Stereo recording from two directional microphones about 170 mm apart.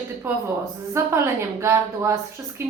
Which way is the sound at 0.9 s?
15° right (ahead or behind).